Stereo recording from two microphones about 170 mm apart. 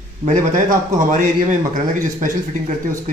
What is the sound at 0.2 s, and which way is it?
Speech, 45° right (ahead or behind).